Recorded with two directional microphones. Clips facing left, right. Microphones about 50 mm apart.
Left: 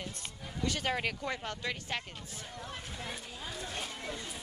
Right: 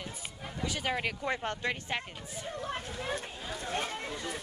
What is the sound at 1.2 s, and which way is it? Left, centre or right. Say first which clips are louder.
Speech: right 4 dB; right.